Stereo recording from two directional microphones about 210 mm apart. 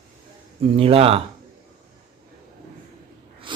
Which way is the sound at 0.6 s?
25° right (ahead or behind).